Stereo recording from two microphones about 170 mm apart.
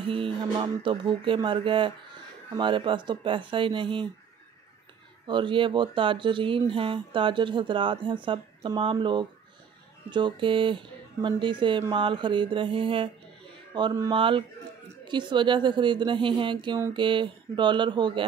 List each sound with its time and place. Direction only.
0.0 s speech: 30° right (ahead or behind)
5.2 s speech: 30° right (ahead or behind)